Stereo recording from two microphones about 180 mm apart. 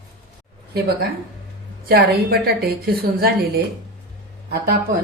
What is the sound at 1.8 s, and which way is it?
A woman's voice, 60° right (ahead or behind).